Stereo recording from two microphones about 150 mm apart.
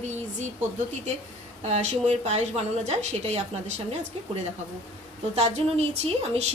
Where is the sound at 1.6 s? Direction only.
45° right (ahead or behind).